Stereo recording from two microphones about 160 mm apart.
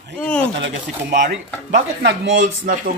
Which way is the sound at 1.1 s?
90° right.